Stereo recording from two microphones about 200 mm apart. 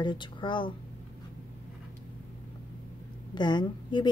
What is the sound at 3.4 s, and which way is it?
Speech, 20° left (ahead or behind).